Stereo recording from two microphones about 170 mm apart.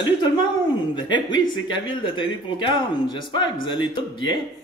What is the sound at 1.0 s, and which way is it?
Speech, 25° left (ahead or behind).